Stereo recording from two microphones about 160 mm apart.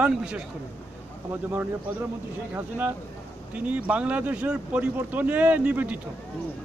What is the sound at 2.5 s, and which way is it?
Speech, 10° right (ahead or behind).